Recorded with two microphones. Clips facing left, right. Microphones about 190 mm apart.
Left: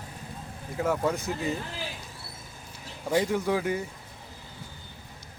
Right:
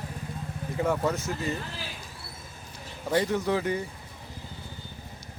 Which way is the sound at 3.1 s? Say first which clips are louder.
Even; 10° left (ahead or behind).